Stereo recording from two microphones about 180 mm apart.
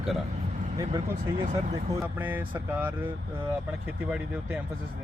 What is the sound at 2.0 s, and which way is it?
Speech, 10° right (ahead or behind).